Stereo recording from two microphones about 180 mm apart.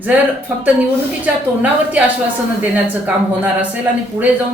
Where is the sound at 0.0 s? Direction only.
10° right (ahead or behind).